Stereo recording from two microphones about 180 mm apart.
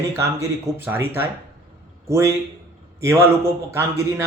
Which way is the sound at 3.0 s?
15° right (ahead or behind).